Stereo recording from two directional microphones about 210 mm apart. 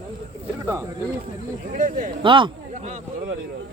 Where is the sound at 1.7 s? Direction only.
40° right (ahead or behind).